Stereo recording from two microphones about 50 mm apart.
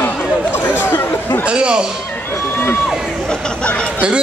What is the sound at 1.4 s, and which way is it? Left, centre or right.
Speech, centre.